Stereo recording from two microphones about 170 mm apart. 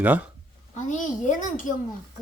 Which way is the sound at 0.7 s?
45° left (ahead or behind).